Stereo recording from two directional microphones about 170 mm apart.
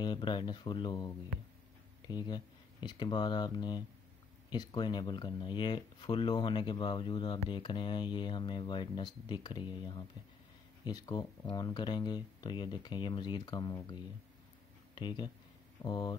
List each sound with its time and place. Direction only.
0.0 s speech: 25° left (ahead or behind)